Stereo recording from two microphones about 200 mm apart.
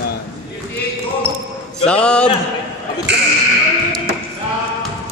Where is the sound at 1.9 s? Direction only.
5° left (ahead or behind).